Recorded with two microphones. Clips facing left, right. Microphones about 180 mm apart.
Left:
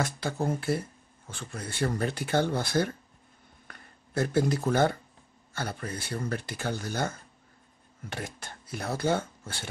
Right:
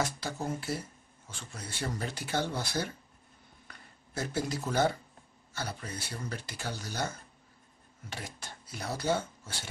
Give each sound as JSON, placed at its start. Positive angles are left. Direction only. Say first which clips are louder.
{"t": 0.0, "sound": "speech", "louder": "left 4 dB", "side_deg": 55}
{"t": 3.6, "sound": "a sound", "louder": "left 3 dB", "side_deg": 55}
{"t": 5.5, "sound": "speech", "louder": "left 4 dB", "side_deg": 55}